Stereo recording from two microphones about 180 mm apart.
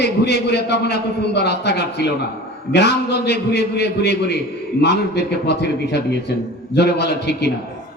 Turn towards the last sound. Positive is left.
turn(degrees=65)  # may be behind; listen again after turning